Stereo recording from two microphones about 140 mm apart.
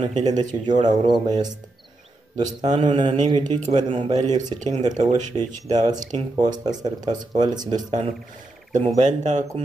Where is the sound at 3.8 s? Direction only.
40° right (ahead or behind).